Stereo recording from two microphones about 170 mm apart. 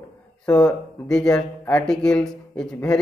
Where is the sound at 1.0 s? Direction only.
5° left (ahead or behind).